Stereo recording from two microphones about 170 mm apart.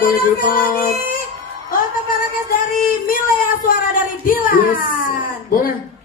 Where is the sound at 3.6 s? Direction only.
55° left (ahead or behind).